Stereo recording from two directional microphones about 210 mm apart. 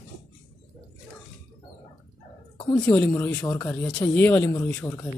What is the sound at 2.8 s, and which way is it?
Speech, 10° left (ahead or behind).